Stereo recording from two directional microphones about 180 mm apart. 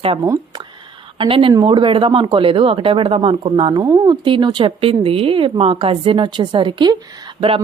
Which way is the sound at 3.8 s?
15° right (ahead or behind).